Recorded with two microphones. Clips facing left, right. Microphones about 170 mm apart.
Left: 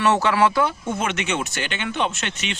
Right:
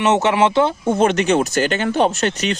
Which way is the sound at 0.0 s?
20° right (ahead or behind).